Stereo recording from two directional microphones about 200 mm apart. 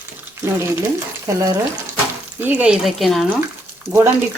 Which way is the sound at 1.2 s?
15° right (ahead or behind).